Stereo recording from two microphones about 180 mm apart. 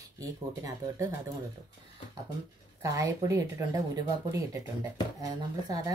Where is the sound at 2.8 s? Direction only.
20° right (ahead or behind).